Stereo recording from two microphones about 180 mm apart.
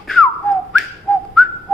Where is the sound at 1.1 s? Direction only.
Centre (ahead or behind).